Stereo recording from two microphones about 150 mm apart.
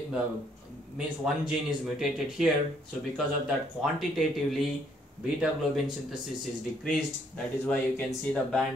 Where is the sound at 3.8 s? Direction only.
Centre (ahead or behind).